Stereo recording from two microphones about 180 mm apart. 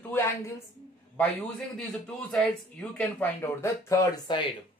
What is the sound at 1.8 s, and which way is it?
Speech, 5° left (ahead or behind).